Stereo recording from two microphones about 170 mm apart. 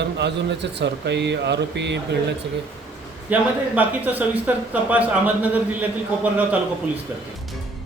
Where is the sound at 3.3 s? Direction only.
10° right (ahead or behind).